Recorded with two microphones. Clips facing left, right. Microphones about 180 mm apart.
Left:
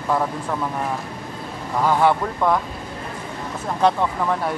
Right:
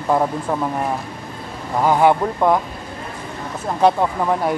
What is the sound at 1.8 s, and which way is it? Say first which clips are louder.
Speech: right 3 dB; 15° right (ahead or behind).